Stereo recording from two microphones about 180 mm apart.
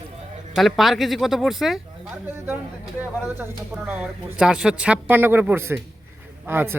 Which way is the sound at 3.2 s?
10° right (ahead or behind).